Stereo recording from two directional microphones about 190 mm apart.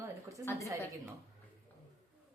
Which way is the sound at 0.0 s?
15° right (ahead or behind).